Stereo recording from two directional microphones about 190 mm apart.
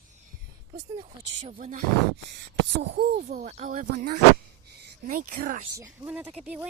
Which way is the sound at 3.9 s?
60° right (ahead or behind).